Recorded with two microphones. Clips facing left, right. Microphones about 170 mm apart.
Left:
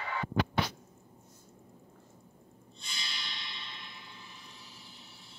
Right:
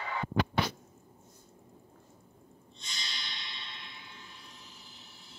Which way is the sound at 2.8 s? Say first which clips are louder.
Even; 5° left (ahead or behind).